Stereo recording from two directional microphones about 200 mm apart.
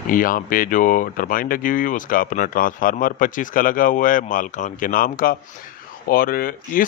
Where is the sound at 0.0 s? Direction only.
45° left (ahead or behind).